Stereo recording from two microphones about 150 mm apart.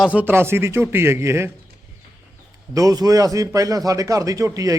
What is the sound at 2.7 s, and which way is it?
A man's voice, 25° right (ahead or behind).